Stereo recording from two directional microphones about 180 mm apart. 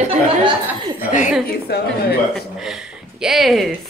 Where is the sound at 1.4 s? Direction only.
60° left (ahead or behind).